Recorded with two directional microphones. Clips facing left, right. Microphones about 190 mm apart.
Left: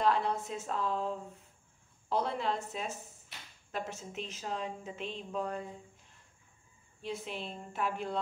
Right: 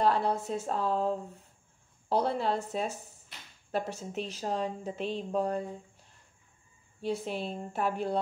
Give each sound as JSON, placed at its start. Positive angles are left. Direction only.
{"t": 0.0, "sound": "speech", "side_deg": -35}
{"t": 7.0, "sound": "speech", "side_deg": -35}